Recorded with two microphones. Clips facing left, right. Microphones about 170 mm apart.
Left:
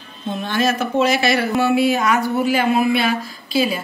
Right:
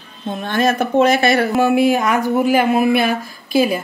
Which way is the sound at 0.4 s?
55° right (ahead or behind).